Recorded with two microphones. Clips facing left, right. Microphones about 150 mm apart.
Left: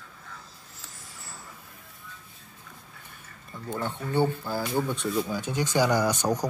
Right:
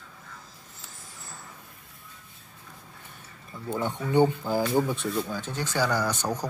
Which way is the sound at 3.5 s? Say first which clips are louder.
Right 2 dB; 10° right (ahead or behind).